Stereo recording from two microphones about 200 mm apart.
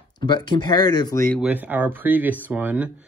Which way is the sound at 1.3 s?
10° right (ahead or behind).